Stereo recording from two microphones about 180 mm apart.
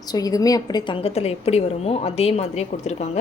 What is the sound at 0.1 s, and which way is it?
A woman's voice, 20° left (ahead or behind).